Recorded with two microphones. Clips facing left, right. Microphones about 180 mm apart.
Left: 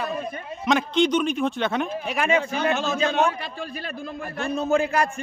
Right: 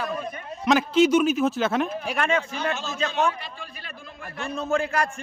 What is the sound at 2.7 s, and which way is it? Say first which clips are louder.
Speech: left 7 dB; 55° left (ahead or behind).